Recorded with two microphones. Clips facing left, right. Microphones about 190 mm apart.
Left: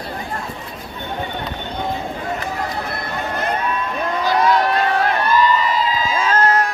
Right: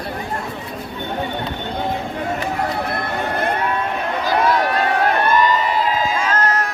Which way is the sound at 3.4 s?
65° right (ahead or behind).